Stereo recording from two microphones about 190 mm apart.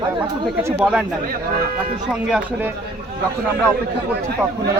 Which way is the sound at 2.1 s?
5° right (ahead or behind).